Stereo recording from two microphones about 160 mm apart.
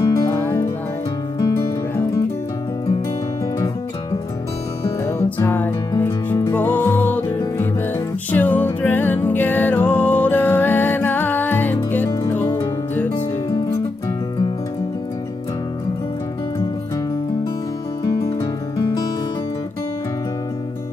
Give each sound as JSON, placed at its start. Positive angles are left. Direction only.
{"t": 0.0, "sound": "music", "side_deg": 15}
{"t": 5.0, "sound": "music", "side_deg": 15}
{"t": 18.4, "sound": "music", "side_deg": 25}